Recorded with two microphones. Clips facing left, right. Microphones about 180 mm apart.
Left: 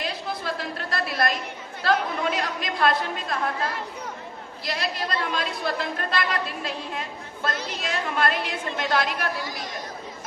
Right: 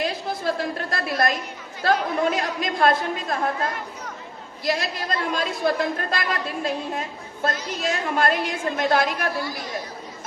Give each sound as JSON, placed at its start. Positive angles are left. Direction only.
{"t": 0.0, "sound": "a woman's voice", "side_deg": -50}
{"t": 4.6, "sound": "a woman's voice", "side_deg": -45}